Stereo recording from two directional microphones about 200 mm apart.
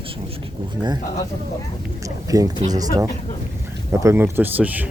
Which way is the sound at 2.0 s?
15° right (ahead or behind).